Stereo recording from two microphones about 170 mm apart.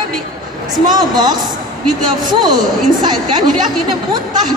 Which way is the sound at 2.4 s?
25° right (ahead or behind).